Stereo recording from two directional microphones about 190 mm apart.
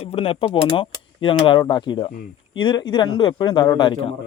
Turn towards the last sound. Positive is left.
turn(degrees=25)  # may be behind; listen again after turning